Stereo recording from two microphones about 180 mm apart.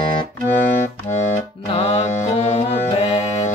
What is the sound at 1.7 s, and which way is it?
Music, 35° left (ahead or behind).